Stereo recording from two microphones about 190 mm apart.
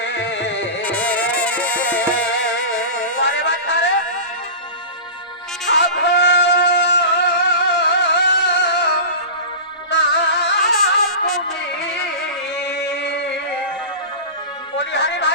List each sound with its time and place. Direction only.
0.0 s music: 70° left (ahead or behind)
0.8 s music: 5° left (ahead or behind)
3.2 s a sound: 70° left (ahead or behind)
5.7 s music: 70° left (ahead or behind)
9.9 s music: 65° left (ahead or behind)
12.6 s a sound: 65° left (ahead or behind)
14.8 s music: 65° left (ahead or behind)